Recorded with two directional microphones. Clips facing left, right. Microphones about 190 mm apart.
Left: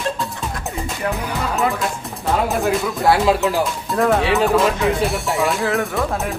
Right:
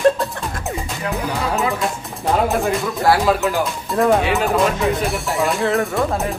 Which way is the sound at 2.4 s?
Centre (ahead or behind).